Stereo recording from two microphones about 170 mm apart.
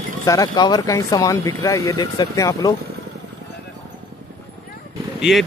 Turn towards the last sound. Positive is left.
turn(degrees=0)  # may be behind; listen again after turning